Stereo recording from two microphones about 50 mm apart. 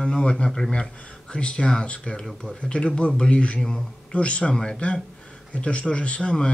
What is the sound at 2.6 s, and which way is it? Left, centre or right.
Speech, centre.